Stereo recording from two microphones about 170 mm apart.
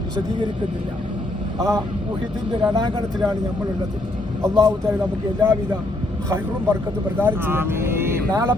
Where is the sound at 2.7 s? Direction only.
25° right (ahead or behind).